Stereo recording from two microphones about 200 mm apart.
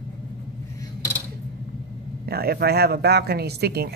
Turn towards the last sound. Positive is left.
turn(degrees=-55)  # may be behind; listen again after turning